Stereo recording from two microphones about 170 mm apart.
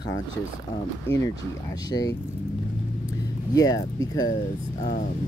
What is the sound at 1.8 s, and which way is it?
Speech, 20° left (ahead or behind).